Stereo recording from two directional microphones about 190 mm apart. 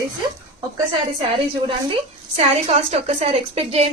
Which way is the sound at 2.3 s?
35° right (ahead or behind).